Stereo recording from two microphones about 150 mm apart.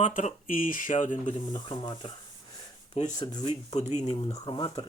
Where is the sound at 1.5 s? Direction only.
30° left (ahead or behind).